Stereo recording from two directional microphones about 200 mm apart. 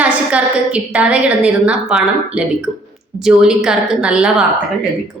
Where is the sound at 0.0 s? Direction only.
5° right (ahead or behind).